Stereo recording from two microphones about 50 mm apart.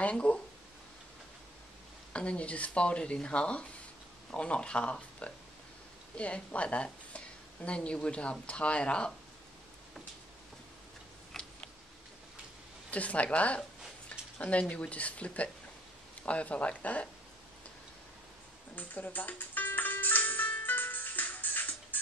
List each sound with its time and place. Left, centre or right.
0.1 s speech: left
2.1 s a woman's voice: left
11.3 s a sound: centre
12.9 s a woman's voice: left
18.8 s music: left